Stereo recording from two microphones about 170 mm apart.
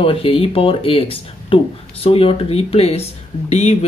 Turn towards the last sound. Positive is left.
turn(degrees=40)  # may be behind; listen again after turning